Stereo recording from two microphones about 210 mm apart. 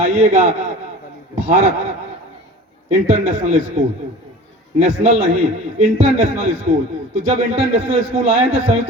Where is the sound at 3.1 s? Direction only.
30° right (ahead or behind).